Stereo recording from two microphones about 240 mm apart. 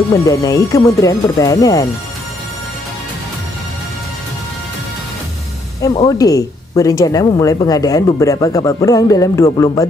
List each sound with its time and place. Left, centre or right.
0.1 s speech: centre
5.9 s speech: centre